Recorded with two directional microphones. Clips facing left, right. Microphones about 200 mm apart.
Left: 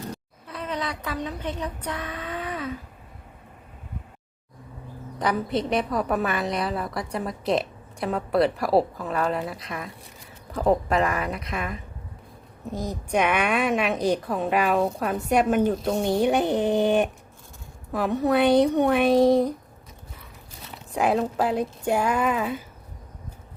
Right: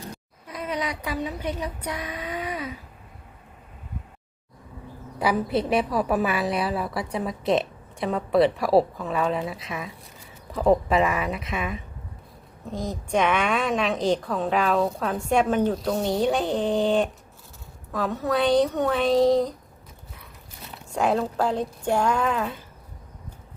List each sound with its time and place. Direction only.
0.4 s speech: 10° right (ahead or behind)
5.2 s a woman's voice: 5° right (ahead or behind); by 18.4 s 15° left (ahead or behind)
18.4 s speech: 60° left (ahead or behind)
18.7 s a woman's voice: 15° left (ahead or behind)
19.1 s speech: 55° left (ahead or behind)
20.9 s a woman's voice: centre (ahead or behind)